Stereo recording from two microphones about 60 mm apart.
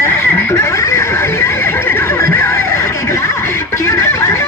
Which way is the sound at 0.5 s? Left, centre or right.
Left.